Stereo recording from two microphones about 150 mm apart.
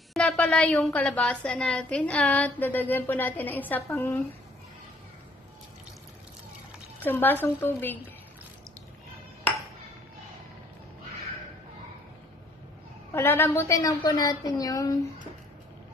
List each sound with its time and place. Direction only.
0.1 s a woman's voice: 5° left (ahead or behind)
7.0 s a woman's voice: 15° left (ahead or behind)
13.1 s a woman's voice: 15° left (ahead or behind)